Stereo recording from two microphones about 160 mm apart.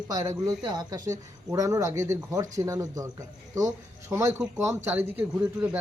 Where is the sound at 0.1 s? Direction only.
25° right (ahead or behind).